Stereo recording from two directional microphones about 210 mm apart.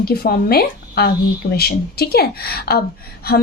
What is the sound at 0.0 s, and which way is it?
A woman's voice, 45° left (ahead or behind).